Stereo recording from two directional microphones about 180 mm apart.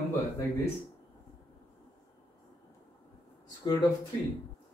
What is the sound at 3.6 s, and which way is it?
Speech, 25° left (ahead or behind).